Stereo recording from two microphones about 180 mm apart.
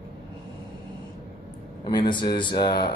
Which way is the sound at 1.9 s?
25° left (ahead or behind).